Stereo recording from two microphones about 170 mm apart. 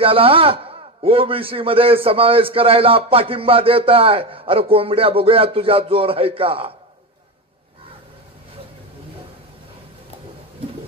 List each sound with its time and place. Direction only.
0.0 s a man's voice: 35° right (ahead or behind)